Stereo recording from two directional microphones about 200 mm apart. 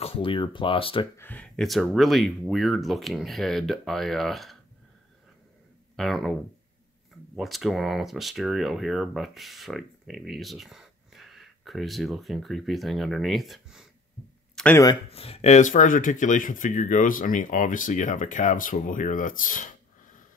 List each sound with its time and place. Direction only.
0.0 s speech: 30° left (ahead or behind)
1.1 s speech: 10° left (ahead or behind)
5.9 s speech: centre (ahead or behind)
7.3 s speech: centre (ahead or behind)
14.5 s a sound: 5° left (ahead or behind)
15.0 s speech: 30° left (ahead or behind)